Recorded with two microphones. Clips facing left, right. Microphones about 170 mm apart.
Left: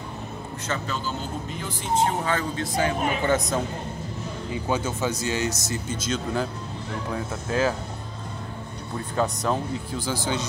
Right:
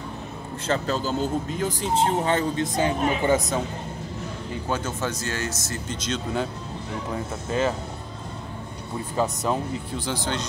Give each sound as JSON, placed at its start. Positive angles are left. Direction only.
{"t": 0.7, "sound": "speech", "side_deg": -40}
{"t": 2.0, "sound": "speech", "side_deg": -25}
{"t": 3.3, "sound": "speech", "side_deg": -5}
{"t": 4.6, "sound": "speech", "side_deg": 10}
{"t": 5.9, "sound": "speech", "side_deg": 0}
{"t": 9.1, "sound": "speech", "side_deg": -5}